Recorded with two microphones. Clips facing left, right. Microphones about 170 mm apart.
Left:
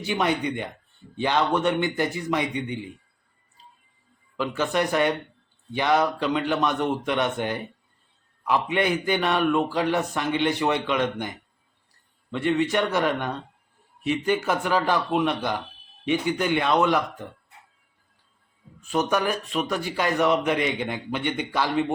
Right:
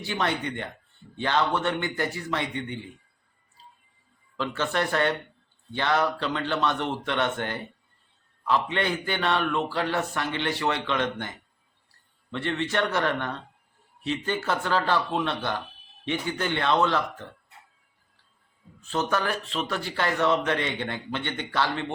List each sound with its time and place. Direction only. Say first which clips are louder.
0.0 s a man's voice: left 4 dB; 15° left (ahead or behind)
4.4 s a man's voice: left 3 dB; 15° left (ahead or behind)
18.9 s a man's voice: left 3 dB; 15° left (ahead or behind)